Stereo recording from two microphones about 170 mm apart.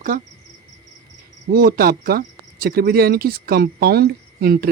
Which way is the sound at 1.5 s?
65° right (ahead or behind).